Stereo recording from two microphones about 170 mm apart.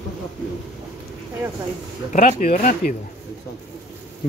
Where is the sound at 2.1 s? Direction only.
45° left (ahead or behind).